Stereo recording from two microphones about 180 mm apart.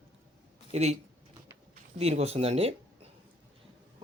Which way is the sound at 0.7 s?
35° right (ahead or behind).